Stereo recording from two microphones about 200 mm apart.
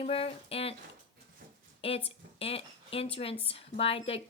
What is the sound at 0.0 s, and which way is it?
Speech, 30° left (ahead or behind).